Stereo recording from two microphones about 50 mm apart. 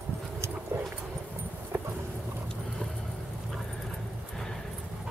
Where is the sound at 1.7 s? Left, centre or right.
Right.